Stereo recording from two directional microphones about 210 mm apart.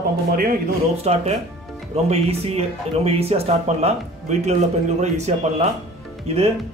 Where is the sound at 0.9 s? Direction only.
30° right (ahead or behind).